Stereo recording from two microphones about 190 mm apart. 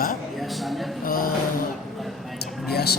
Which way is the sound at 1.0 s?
50° left (ahead or behind).